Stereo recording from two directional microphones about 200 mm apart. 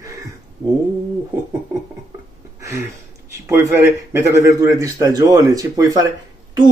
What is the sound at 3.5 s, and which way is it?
Speech, 15° right (ahead or behind).